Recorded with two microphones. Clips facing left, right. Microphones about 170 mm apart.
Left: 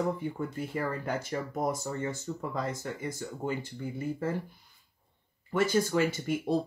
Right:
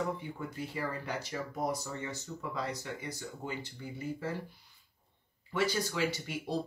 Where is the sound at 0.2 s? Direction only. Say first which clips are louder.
Left 6 dB; 50° left (ahead or behind).